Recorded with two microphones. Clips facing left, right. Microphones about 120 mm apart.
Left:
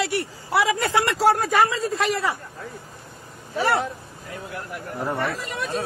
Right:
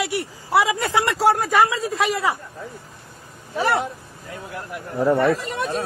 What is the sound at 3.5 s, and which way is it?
Speech, 20° right (ahead or behind).